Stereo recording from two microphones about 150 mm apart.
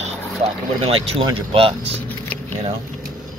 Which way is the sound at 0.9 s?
40° right (ahead or behind).